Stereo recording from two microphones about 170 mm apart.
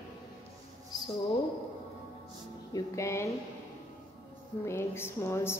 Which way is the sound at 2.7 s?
15° left (ahead or behind).